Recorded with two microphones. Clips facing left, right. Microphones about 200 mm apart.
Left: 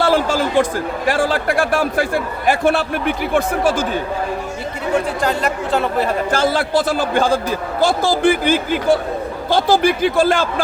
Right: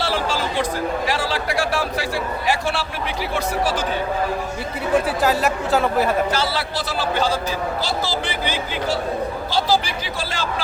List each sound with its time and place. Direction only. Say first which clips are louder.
0.0 s speech: left 7 dB; 50° left (ahead or behind)
5.2 s speech: even; 5° right (ahead or behind)
6.3 s speech: left 7 dB; 50° left (ahead or behind)